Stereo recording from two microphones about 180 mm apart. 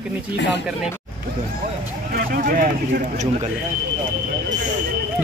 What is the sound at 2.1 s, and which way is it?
A man's voice, 55° right (ahead or behind).